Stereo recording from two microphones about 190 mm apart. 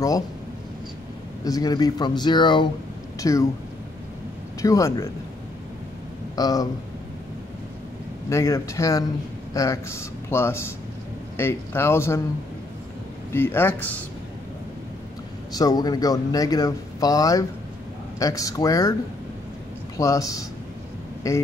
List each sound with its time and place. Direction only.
1.4 s speech: 20° left (ahead or behind)
4.6 s speech: 15° left (ahead or behind)
6.3 s speech: 20° left (ahead or behind)
8.3 s speech: 15° left (ahead or behind)
13.3 s speech: 10° left (ahead or behind)
15.5 s speech: 20° left (ahead or behind)
20.0 s speech: 15° left (ahead or behind)